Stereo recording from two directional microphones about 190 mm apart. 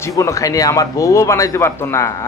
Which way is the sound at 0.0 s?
15° left (ahead or behind).